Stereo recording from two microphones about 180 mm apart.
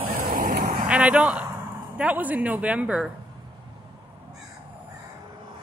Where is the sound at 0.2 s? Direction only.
50° right (ahead or behind).